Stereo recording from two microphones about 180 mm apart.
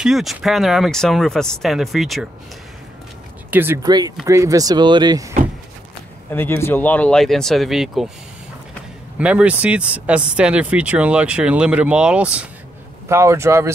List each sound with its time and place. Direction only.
0.0 s speech: centre (ahead or behind)
3.4 s speech: 10° right (ahead or behind)
6.3 s speech: 10° left (ahead or behind)
9.2 s speech: 5° right (ahead or behind)